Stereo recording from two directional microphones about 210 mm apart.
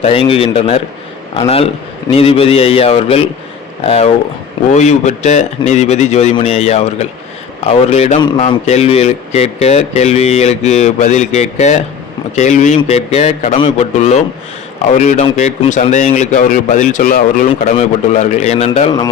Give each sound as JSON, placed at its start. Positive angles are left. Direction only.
{"t": 0.0, "sound": "a man's voice", "side_deg": 25}